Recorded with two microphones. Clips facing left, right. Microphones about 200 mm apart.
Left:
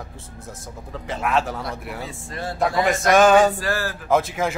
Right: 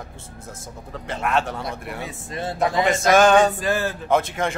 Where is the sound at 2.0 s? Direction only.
20° right (ahead or behind).